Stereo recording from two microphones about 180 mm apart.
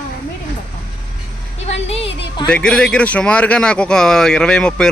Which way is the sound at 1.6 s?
35° left (ahead or behind).